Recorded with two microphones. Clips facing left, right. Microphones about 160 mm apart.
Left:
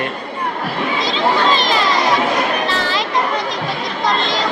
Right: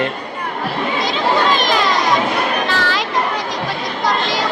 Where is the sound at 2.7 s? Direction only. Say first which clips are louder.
Even; centre (ahead or behind).